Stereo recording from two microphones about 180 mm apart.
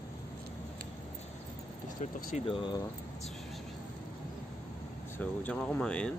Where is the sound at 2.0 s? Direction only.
45° left (ahead or behind).